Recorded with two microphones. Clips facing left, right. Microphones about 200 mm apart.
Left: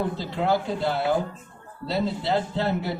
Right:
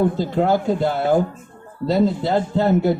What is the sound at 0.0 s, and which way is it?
Speech, 50° right (ahead or behind).